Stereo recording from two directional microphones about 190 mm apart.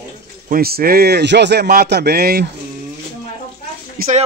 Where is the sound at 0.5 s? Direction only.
55° right (ahead or behind).